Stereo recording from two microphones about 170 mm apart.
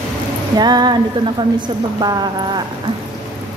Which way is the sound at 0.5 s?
25° right (ahead or behind).